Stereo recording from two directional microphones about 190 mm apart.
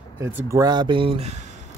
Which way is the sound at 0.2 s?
15° right (ahead or behind).